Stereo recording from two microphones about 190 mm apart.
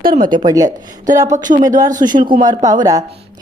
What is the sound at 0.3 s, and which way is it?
A woman's voice, 20° right (ahead or behind).